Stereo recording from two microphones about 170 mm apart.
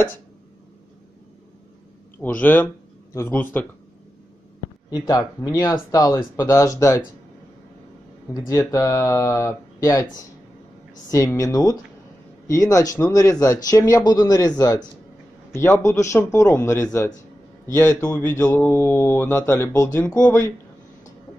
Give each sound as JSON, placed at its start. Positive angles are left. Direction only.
{"t": 2.2, "sound": "speech", "side_deg": 10}
{"t": 4.9, "sound": "speech", "side_deg": 20}
{"t": 8.3, "sound": "speech", "side_deg": 20}